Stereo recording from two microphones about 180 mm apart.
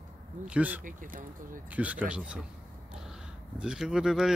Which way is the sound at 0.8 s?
50° right (ahead or behind).